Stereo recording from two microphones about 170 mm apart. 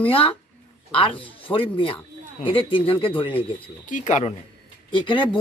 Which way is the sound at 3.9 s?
45° left (ahead or behind).